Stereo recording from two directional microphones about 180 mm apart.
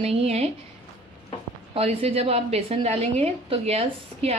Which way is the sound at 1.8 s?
30° right (ahead or behind).